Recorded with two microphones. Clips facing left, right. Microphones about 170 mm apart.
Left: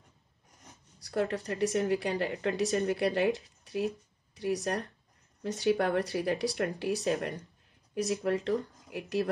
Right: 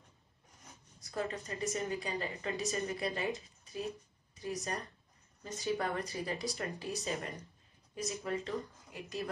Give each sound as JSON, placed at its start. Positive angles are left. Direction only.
{"t": 0.9, "sound": "speech", "side_deg": 75}
{"t": 3.4, "sound": "a sound", "side_deg": 75}
{"t": 4.4, "sound": "speech", "side_deg": 75}